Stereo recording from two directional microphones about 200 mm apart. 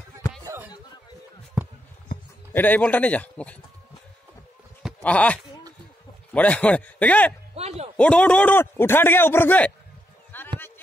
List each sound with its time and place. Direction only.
0.4 s a sound: 15° right (ahead or behind)
2.5 s a man's voice: 10° left (ahead or behind)
4.8 s a sound: 5° left (ahead or behind)
6.3 s a man's voice: 5° left (ahead or behind)
7.5 s a man's voice: 30° right (ahead or behind)
8.0 s a man's voice: 5° left (ahead or behind)
10.3 s run: 10° left (ahead or behind)